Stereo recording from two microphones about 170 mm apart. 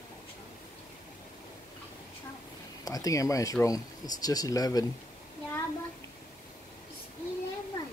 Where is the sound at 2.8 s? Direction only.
20° left (ahead or behind).